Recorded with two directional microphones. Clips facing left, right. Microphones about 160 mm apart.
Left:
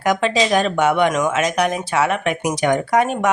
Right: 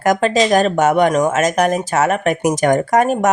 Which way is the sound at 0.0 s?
45° right (ahead or behind).